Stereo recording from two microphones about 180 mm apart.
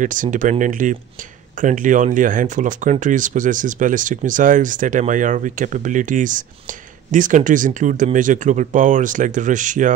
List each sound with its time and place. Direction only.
0.0 s speech: 45° right (ahead or behind)